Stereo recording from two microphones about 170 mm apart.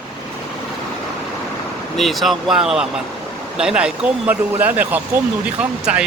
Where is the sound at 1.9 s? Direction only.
Centre (ahead or behind).